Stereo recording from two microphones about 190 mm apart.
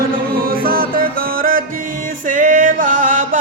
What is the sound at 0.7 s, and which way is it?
Music, 50° right (ahead or behind).